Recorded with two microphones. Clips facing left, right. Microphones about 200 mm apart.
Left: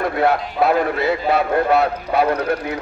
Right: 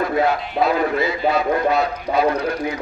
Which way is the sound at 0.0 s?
60° left (ahead or behind).